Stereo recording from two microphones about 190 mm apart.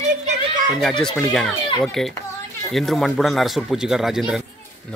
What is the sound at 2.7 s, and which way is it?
Speech, centre (ahead or behind).